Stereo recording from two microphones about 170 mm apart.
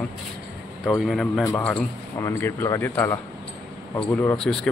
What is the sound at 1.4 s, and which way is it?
A man's voice, 20° left (ahead or behind).